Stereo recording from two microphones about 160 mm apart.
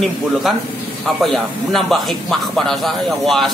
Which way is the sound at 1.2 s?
Centre (ahead or behind).